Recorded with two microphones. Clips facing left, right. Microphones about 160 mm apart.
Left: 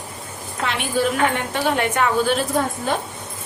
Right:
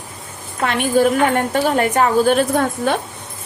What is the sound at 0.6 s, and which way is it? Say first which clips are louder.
A woman's voice: right 6 dB; 50° right (ahead or behind).